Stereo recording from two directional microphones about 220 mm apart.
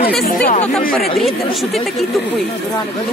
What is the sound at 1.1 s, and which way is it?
Speech, centre (ahead or behind).